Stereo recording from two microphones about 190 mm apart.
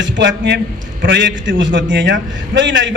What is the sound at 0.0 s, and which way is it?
A man's voice, 70° right (ahead or behind).